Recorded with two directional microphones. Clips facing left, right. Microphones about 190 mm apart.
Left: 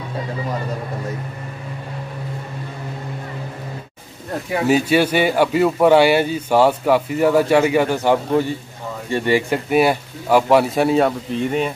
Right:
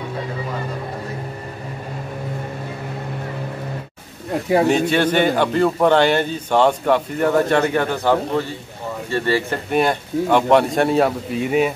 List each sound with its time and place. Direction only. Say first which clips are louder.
4.6 s a man's voice: left 1 dB; 5° left (ahead or behind)